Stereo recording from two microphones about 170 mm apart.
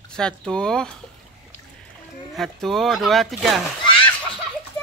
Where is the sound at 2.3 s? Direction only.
Centre (ahead or behind).